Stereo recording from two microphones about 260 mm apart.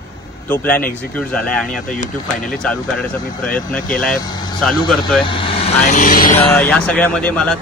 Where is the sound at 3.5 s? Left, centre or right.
Centre.